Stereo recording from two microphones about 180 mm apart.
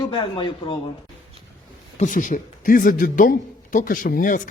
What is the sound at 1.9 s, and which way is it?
Speech, 45° left (ahead or behind).